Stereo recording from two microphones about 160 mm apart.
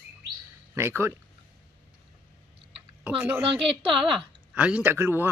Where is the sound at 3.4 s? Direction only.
35° right (ahead or behind).